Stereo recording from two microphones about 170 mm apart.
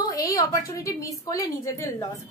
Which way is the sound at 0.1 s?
20° left (ahead or behind).